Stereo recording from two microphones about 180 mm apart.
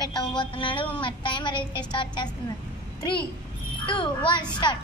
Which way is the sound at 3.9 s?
25° left (ahead or behind).